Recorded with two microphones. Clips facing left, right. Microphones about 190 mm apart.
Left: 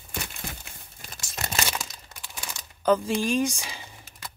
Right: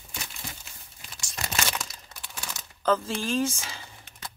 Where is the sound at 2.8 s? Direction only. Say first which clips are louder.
Left 3 dB; 15° left (ahead or behind).